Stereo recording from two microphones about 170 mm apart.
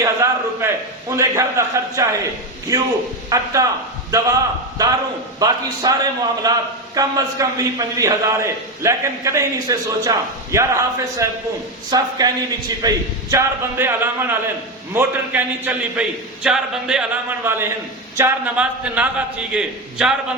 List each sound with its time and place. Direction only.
0.0 s a sound: 15° right (ahead or behind)
1.1 s a man's voice: 15° right (ahead or behind)
5.4 s a man's voice: 20° right (ahead or behind); by 20.1 s 5° right (ahead or behind)